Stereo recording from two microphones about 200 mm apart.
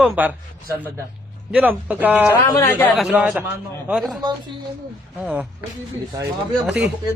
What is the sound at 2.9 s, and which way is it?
A woman's voice, 5° right (ahead or behind).